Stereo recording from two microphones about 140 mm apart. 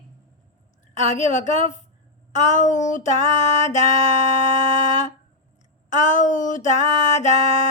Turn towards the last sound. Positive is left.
turn(degrees=60)  # may be behind; listen again after turning